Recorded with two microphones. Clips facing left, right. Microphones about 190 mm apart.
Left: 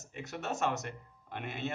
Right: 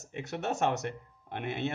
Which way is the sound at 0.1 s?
60° right (ahead or behind).